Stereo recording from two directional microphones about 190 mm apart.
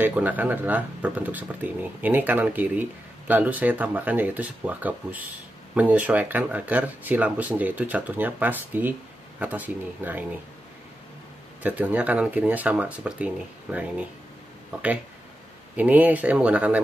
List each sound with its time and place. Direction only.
0.0 s speech: 10° right (ahead or behind)
11.6 s speech: 10° right (ahead or behind)